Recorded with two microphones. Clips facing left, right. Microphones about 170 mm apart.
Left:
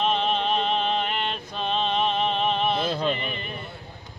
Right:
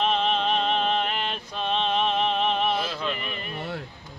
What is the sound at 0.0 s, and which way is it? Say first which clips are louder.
Music: even; centre (ahead or behind).